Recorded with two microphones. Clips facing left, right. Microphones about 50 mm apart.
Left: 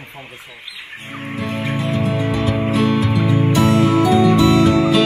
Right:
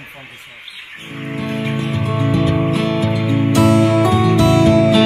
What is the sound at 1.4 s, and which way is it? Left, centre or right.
Music, centre.